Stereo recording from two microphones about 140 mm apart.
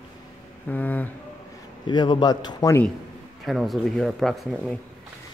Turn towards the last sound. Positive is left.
turn(degrees=0)  # may be behind; listen again after turning